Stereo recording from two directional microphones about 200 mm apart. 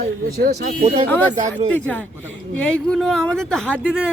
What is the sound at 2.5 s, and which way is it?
Speech, 5° left (ahead or behind).